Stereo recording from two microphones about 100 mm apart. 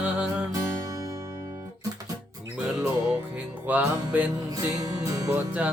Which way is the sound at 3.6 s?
15° right (ahead or behind).